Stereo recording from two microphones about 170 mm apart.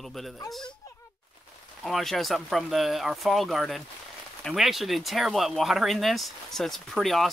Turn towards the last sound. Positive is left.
turn(degrees=0)  # may be behind; listen again after turning